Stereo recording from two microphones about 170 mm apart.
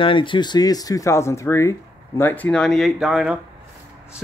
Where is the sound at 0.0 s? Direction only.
30° left (ahead or behind).